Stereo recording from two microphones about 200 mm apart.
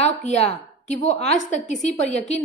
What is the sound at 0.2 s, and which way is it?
A woman's voice, 35° left (ahead or behind).